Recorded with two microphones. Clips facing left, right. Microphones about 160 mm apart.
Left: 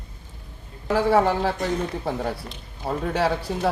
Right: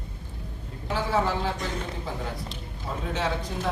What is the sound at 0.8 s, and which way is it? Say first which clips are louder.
Speech: left 7 dB; 65° left (ahead or behind).